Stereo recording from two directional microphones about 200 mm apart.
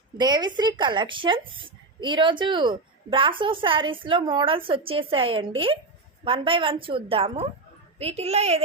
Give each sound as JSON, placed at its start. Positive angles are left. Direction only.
{"t": 0.2, "sound": "a woman's voice", "side_deg": -20}